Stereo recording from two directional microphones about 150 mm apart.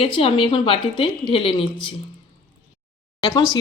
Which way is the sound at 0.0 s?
40° left (ahead or behind).